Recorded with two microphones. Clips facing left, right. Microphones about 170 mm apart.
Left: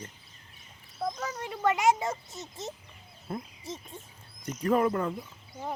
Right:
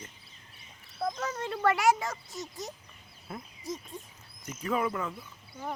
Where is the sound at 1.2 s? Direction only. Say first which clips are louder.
Right 1 dB; 10° left (ahead or behind); by 4.0 s 25° left (ahead or behind).